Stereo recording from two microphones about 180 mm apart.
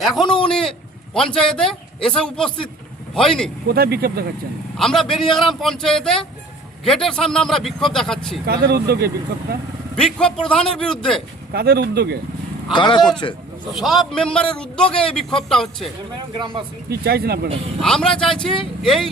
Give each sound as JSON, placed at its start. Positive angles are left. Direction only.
{"t": 0.0, "sound": "a man's voice", "side_deg": 0}
{"t": 3.7, "sound": "speech", "side_deg": -60}
{"t": 4.8, "sound": "a man's voice", "side_deg": 5}
{"t": 8.4, "sound": "speech", "side_deg": -60}
{"t": 9.9, "sound": "a man's voice", "side_deg": 5}
{"t": 11.5, "sound": "speech", "side_deg": -65}
{"t": 12.7, "sound": "a man's voice", "side_deg": 25}
{"t": 13.7, "sound": "a man's voice", "side_deg": 0}
{"t": 16.9, "sound": "speech", "side_deg": -60}
{"t": 17.7, "sound": "a man's voice", "side_deg": 5}